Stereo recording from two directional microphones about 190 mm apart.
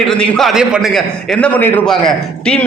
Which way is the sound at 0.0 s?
5° left (ahead or behind).